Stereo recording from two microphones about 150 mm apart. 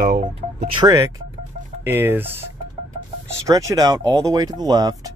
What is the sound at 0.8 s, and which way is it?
Speech, 20° right (ahead or behind).